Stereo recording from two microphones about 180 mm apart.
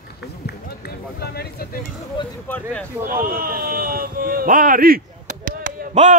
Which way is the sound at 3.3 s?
55° right (ahead or behind).